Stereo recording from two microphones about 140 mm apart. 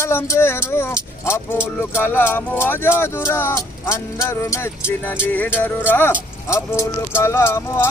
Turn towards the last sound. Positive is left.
turn(degrees=20)  # may be behind; listen again after turning